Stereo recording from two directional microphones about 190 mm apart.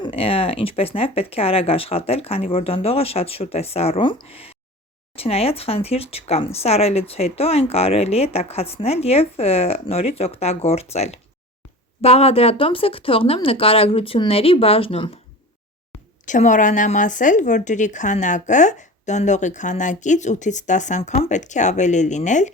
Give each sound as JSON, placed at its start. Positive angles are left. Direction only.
{"t": 0.0, "sound": "speech", "side_deg": 30}
{"t": 16.2, "sound": "speech", "side_deg": 40}